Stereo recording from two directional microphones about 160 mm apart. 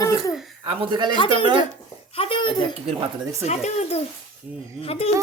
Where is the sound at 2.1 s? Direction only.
35° left (ahead or behind).